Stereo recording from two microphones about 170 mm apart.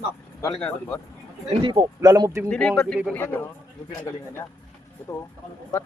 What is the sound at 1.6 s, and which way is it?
Speech, 25° right (ahead or behind).